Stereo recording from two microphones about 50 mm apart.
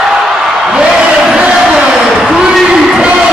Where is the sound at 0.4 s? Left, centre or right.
Centre.